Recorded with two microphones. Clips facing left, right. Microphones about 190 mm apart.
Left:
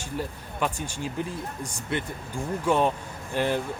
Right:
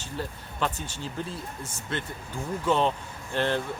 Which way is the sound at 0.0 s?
10° left (ahead or behind).